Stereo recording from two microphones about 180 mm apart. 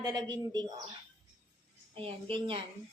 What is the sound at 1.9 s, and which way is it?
Speech, 30° right (ahead or behind).